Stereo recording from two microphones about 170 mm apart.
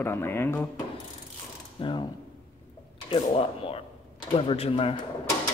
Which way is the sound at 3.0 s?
35° left (ahead or behind).